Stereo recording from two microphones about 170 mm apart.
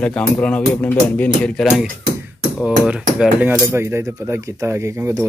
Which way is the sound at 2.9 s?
10° right (ahead or behind).